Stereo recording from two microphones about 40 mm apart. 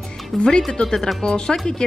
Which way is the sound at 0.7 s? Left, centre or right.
Centre.